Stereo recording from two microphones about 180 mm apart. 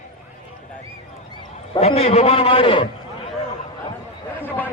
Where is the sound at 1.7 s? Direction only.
35° left (ahead or behind).